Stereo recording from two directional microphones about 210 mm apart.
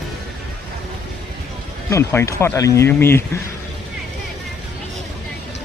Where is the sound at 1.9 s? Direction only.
15° left (ahead or behind).